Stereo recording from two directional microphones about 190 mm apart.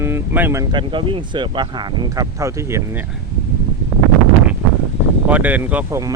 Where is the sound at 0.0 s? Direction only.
10° right (ahead or behind).